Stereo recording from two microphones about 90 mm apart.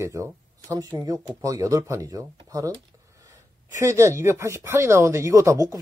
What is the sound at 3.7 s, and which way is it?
Speech, 35° right (ahead or behind).